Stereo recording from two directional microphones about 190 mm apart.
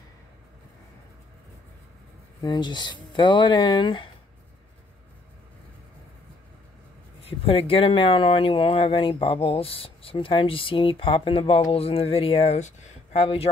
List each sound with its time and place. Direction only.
2.4 s speech: 25° left (ahead or behind)
7.2 s speech: 30° left (ahead or behind)